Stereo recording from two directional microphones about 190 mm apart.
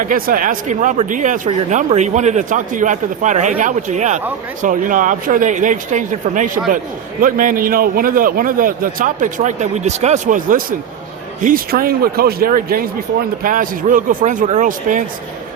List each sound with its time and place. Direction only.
0.0 s a man's voice: 45° right (ahead or behind)